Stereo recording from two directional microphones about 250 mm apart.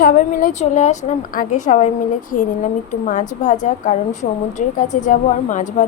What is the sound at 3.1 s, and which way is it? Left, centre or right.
A woman's voice, left.